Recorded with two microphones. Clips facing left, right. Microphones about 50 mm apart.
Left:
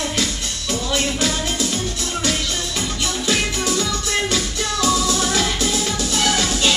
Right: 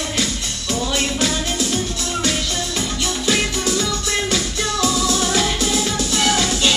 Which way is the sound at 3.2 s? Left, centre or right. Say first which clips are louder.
Right 1 dB; right.